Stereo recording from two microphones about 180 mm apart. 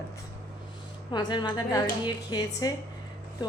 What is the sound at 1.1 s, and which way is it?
A woman's voice, 25° left (ahead or behind).